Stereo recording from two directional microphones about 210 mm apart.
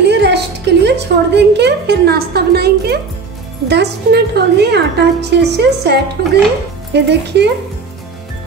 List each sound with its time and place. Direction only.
0.0 s music: 55° right (ahead or behind)
0.8 s a woman's voice: 55° right (ahead or behind)